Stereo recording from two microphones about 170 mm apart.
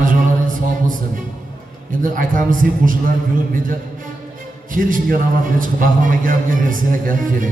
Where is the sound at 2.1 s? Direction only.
55° right (ahead or behind).